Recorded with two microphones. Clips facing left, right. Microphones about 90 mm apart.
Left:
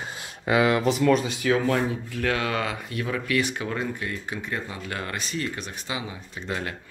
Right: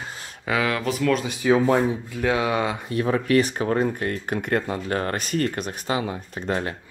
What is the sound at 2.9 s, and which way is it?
Speech, 35° right (ahead or behind).